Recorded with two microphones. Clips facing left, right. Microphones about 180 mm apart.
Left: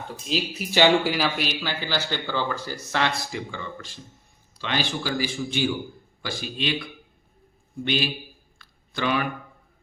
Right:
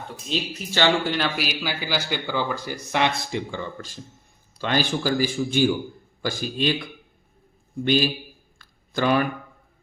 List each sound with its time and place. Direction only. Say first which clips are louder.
0.3 s speech: left 1 dB; 5° left (ahead or behind)
1.4 s a man's voice: right 1 dB; 10° right (ahead or behind); by 6.8 s 40° right (ahead or behind)
7.9 s a man's voice: right 5 dB; 40° right (ahead or behind)
8.5 s a sound: right 5 dB; 45° right (ahead or behind)